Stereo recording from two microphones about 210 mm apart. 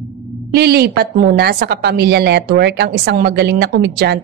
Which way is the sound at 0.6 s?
50° right (ahead or behind).